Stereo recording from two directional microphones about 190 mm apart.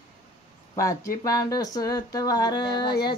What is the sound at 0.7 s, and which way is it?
Speech, 15° left (ahead or behind).